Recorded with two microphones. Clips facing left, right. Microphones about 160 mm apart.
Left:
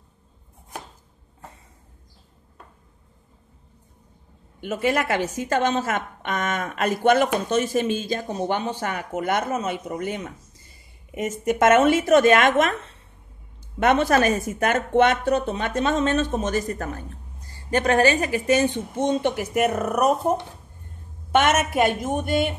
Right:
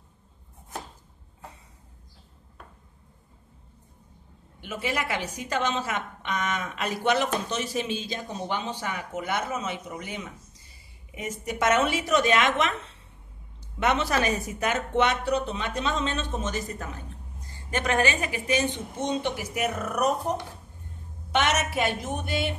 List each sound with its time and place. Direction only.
4.6 s speech: 50° left (ahead or behind)
13.7 s speech: 50° left (ahead or behind)
17.6 s speech: 35° left (ahead or behind)
21.3 s a woman's voice: 50° left (ahead or behind)